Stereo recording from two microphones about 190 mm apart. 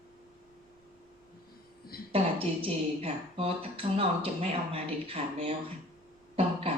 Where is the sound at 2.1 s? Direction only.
30° right (ahead or behind).